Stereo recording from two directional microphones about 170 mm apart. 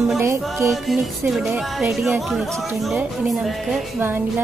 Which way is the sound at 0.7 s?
Centre (ahead or behind).